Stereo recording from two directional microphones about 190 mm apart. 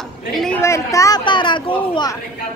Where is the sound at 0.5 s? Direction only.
15° left (ahead or behind).